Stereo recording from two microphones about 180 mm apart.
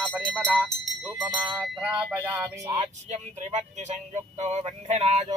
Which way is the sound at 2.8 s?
40° right (ahead or behind).